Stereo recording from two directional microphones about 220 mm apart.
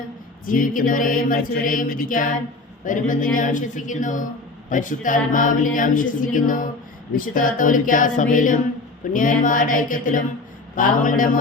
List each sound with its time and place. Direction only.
0.4 s mantra: 40° left (ahead or behind)